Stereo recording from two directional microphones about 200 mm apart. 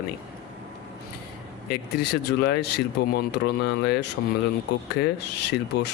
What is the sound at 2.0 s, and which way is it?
Speech, 55° left (ahead or behind).